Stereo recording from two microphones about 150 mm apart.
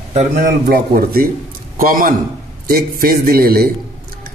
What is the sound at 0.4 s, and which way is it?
Speech, 75° right (ahead or behind).